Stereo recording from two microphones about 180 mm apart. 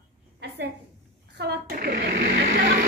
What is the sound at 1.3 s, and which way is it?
A woman's voice, 65° right (ahead or behind).